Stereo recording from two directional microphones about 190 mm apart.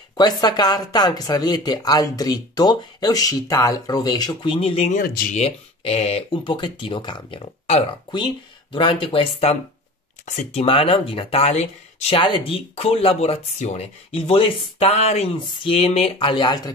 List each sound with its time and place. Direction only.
0.1 s speech: 20° left (ahead or behind)
5.0 s speech: 50° left (ahead or behind)
5.3 s speech: 35° left (ahead or behind)